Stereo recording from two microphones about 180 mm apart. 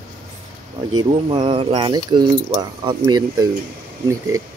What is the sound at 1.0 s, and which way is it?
Speech, 30° right (ahead or behind).